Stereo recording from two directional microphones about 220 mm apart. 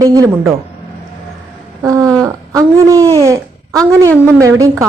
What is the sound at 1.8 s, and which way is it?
A man's voice, 15° right (ahead or behind).